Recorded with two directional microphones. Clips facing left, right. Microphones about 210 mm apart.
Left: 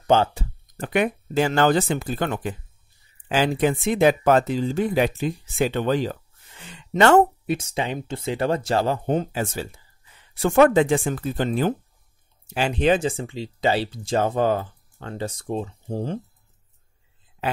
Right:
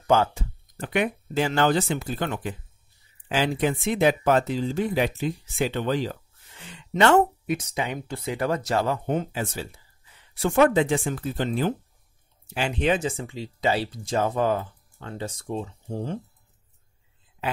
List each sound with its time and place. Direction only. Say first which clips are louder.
0.0 s speech: left 2 dB; 30° left (ahead or behind)
0.7 s speech: left 3 dB; 45° left (ahead or behind)
6.9 s speech: left 3 dB; 40° left (ahead or behind)
7.5 s speech: left 2 dB; 25° left (ahead or behind); by 9.7 s 45° left (ahead or behind)
10.4 s speech: left 3 dB; 55° left (ahead or behind)
12.5 s speech: left 4 dB; 35° left (ahead or behind)